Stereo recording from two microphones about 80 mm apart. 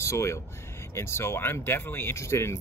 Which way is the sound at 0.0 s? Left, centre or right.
Left.